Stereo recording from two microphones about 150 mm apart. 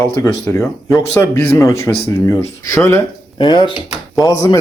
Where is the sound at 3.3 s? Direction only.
30° left (ahead or behind).